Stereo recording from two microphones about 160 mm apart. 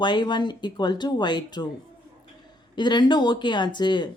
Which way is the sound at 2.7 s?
30° left (ahead or behind).